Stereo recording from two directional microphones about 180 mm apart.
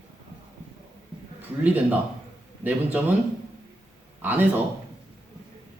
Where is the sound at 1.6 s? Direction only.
10° right (ahead or behind).